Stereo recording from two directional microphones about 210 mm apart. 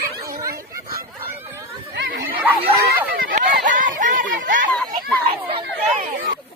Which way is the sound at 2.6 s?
45° right (ahead or behind).